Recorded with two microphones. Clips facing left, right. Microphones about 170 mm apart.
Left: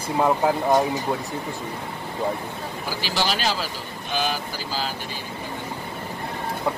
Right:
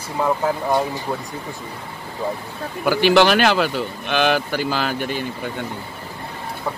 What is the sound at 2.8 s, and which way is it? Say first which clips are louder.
Speech: right 13 dB; 65° right (ahead or behind).